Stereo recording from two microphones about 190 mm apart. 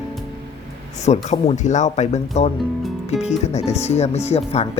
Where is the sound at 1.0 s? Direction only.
35° left (ahead or behind).